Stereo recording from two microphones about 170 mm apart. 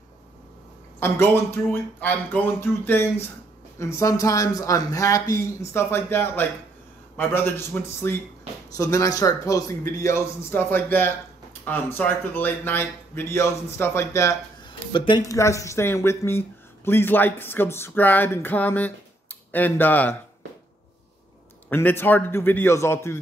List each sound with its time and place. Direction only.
0.9 s a man's voice: 15° left (ahead or behind)
14.7 s speech: 30° left (ahead or behind); by 20.2 s 10° left (ahead or behind)
21.6 s speech: 10° left (ahead or behind)